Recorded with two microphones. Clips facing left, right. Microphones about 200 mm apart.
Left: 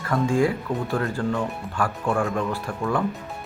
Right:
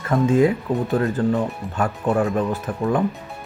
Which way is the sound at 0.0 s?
20° right (ahead or behind).